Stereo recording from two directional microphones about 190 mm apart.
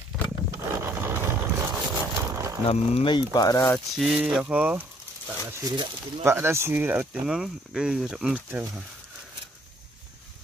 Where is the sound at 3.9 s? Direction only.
Centre (ahead or behind).